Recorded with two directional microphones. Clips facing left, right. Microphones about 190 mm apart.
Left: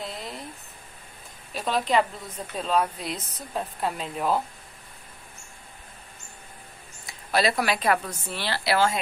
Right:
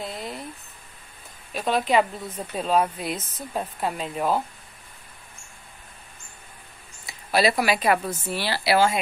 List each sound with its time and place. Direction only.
0.0 s a sound: centre (ahead or behind)
1.5 s speech: centre (ahead or behind)
7.1 s speech: 5° right (ahead or behind)